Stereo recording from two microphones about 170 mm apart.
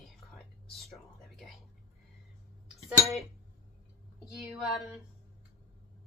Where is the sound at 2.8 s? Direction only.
Centre (ahead or behind).